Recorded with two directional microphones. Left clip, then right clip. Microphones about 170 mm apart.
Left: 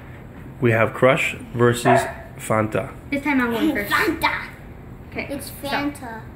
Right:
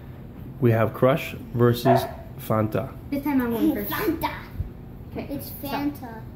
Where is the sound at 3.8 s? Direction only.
10° right (ahead or behind).